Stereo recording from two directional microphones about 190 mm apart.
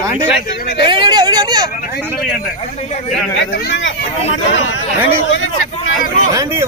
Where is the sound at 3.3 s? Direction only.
75° left (ahead or behind).